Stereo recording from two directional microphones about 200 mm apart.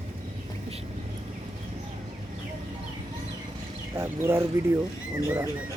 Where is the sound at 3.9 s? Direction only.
15° right (ahead or behind).